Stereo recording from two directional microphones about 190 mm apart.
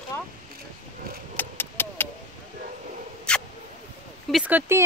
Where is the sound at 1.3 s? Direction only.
10° left (ahead or behind).